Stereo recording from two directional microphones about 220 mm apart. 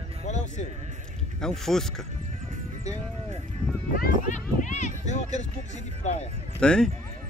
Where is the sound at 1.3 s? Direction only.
Centre (ahead or behind).